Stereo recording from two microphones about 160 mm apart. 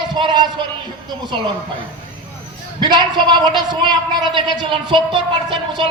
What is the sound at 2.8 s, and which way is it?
A woman's voice, 30° right (ahead or behind).